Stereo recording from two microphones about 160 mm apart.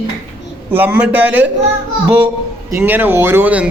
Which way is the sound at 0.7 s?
10° right (ahead or behind).